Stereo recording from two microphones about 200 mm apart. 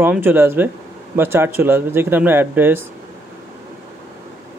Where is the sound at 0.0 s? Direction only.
10° right (ahead or behind).